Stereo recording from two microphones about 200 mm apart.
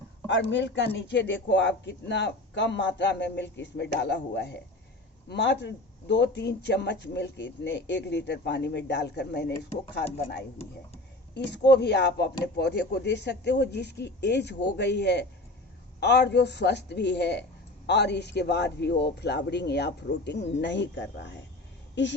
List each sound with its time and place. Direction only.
0.3 s speech: 65° left (ahead or behind)
11.3 s speech: 60° left (ahead or behind)